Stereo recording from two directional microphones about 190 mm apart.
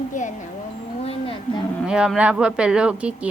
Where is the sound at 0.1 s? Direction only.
40° left (ahead or behind).